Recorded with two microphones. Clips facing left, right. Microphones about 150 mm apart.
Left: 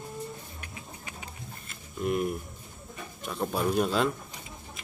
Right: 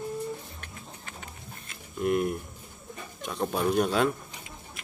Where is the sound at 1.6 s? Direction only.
Centre (ahead or behind).